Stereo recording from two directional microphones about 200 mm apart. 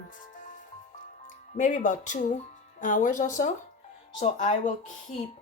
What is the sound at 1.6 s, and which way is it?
Speech, 40° left (ahead or behind).